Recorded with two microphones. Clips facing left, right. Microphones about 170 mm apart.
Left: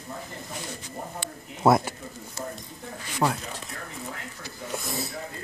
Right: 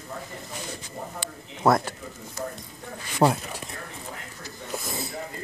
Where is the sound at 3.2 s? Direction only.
30° right (ahead or behind).